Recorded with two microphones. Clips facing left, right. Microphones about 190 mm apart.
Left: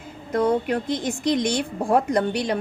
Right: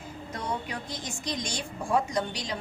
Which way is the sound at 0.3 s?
55° left (ahead or behind).